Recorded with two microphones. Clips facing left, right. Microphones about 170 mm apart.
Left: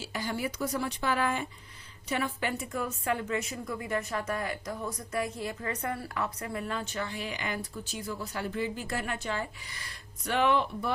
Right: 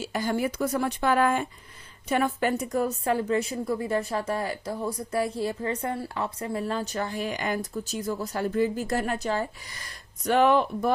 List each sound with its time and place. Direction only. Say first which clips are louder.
0.0 s a woman's voice: right 7 dB; 45° right (ahead or behind)